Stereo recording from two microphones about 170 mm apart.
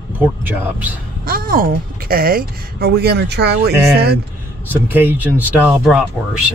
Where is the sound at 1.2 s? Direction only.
55° right (ahead or behind); by 3.7 s 75° right (ahead or behind).